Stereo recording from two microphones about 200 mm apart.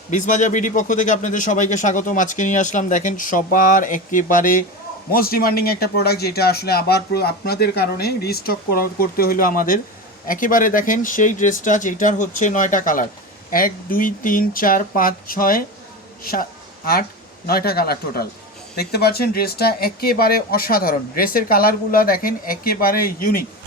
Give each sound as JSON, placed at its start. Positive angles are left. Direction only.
{"t": 0.1, "sound": "a man's voice", "side_deg": 40}